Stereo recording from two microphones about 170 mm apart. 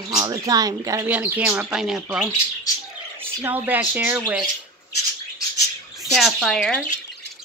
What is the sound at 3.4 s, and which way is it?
Speech, 10° right (ahead or behind).